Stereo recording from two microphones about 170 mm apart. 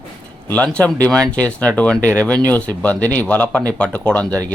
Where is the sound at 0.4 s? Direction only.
10° left (ahead or behind).